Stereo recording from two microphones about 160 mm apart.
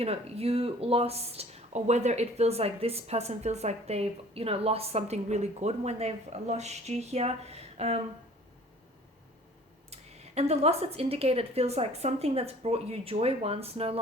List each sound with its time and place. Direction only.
0.0 s speech: 40° right (ahead or behind)
9.9 s speech: 40° right (ahead or behind)